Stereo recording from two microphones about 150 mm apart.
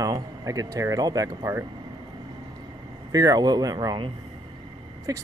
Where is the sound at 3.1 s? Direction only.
25° right (ahead or behind).